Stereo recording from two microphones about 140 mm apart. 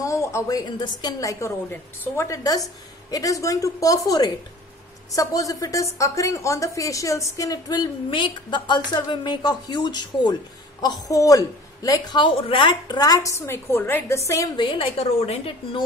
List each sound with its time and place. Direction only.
0.0 s a woman's voice: 20° left (ahead or behind)
14.6 s a woman's voice: 45° left (ahead or behind)